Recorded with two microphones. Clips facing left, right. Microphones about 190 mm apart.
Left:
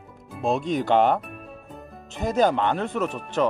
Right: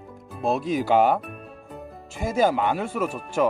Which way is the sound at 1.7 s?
5° right (ahead or behind).